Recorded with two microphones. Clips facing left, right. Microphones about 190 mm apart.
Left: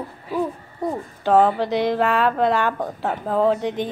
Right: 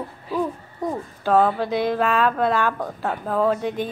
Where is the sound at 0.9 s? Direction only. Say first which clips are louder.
Left 2 dB; 15° left (ahead or behind).